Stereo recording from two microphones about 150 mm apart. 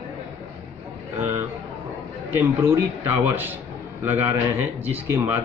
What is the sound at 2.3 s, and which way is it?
Speech, 15° right (ahead or behind).